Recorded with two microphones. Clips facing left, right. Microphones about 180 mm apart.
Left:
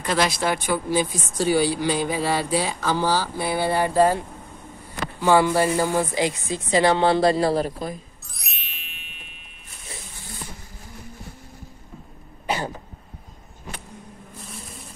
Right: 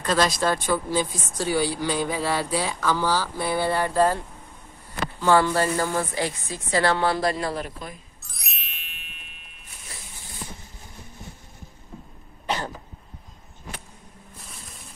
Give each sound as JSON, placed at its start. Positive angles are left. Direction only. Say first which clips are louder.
{"t": 0.0, "sound": "speech", "louder": "even", "side_deg": 10}
{"t": 3.3, "sound": "speech", "louder": "left 1 dB", "side_deg": 10}
{"t": 5.2, "sound": "speech", "louder": "left 2 dB", "side_deg": 15}
{"t": 8.3, "sound": "music", "louder": "even", "side_deg": 0}
{"t": 12.4, "sound": "cough", "louder": "left 2 dB", "side_deg": 10}